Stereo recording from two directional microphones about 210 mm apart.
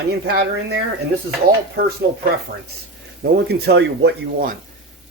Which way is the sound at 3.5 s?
50° right (ahead or behind).